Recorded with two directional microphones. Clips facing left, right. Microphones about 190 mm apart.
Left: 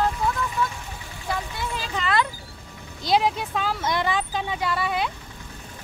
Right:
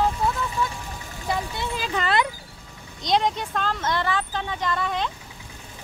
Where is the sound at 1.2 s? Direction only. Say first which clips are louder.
Right 2 dB; 25° right (ahead or behind).